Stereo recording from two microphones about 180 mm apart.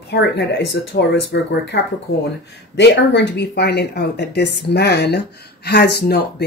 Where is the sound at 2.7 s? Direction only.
75° left (ahead or behind).